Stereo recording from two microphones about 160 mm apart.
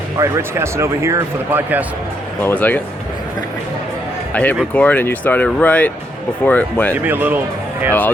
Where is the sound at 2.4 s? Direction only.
10° left (ahead or behind).